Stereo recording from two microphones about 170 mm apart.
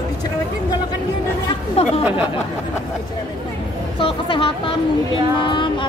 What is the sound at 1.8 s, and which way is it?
Chatter, 35° left (ahead or behind).